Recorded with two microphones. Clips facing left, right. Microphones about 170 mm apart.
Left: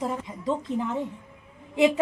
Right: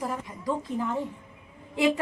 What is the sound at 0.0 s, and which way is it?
Speech, 25° left (ahead or behind).